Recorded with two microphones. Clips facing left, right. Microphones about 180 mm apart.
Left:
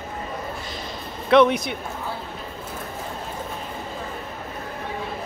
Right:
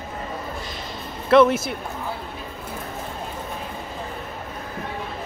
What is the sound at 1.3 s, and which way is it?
Speech, centre (ahead or behind).